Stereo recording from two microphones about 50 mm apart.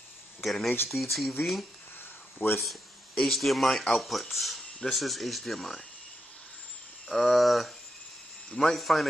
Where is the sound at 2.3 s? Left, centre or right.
Left.